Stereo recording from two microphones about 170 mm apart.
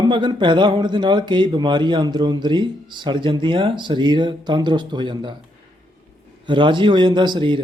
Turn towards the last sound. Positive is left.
turn(degrees=-30)  # may be behind; listen again after turning